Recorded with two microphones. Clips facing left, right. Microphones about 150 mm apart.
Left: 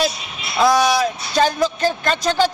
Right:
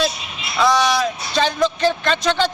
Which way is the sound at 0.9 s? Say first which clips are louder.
Left 1 dB; 45° left (ahead or behind).